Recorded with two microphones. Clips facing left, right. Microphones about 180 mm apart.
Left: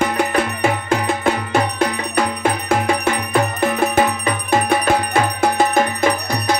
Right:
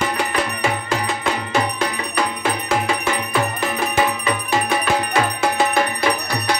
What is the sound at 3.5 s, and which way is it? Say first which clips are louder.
Music: left 4 dB; 50° left (ahead or behind).